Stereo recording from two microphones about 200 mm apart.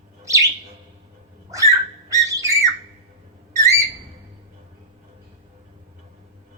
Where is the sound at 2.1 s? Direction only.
15° right (ahead or behind).